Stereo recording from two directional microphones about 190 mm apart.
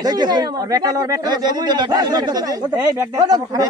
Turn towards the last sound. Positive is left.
turn(degrees=-20)  # may be behind; listen again after turning